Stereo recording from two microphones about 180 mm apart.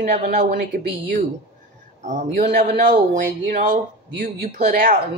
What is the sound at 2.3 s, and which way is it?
A woman's voice, 50° right (ahead or behind).